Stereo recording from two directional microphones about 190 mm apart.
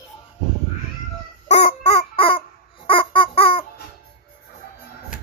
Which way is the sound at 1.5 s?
35° left (ahead or behind).